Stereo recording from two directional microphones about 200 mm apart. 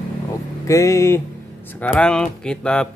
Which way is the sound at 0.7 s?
15° left (ahead or behind).